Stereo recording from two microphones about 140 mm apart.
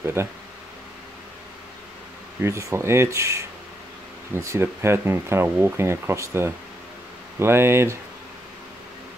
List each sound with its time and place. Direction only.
0.0 s speech: 15° right (ahead or behind)
2.4 s speech: 20° right (ahead or behind)